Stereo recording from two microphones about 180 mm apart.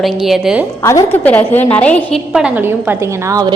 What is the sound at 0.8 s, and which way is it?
A woman's voice, 15° left (ahead or behind).